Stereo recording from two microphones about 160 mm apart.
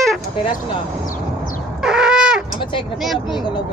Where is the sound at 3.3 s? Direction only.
30° left (ahead or behind).